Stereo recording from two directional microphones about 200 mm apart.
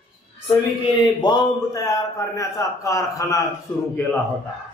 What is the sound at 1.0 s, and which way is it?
A man's voice, 20° left (ahead or behind).